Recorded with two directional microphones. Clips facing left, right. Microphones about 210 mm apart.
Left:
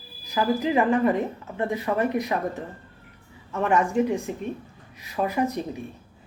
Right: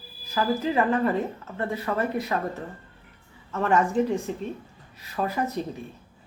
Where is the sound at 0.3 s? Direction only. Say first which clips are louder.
Left 2 dB; 15° left (ahead or behind).